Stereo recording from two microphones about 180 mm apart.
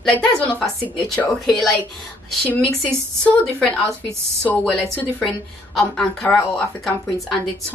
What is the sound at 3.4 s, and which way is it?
A woman's voice, 5° left (ahead or behind).